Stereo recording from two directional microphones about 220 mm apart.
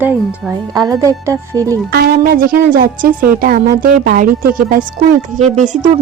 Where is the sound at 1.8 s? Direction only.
45° right (ahead or behind).